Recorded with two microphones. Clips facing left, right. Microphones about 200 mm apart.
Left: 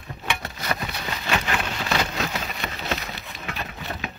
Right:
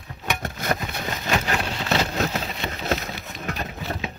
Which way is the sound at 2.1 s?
30° right (ahead or behind).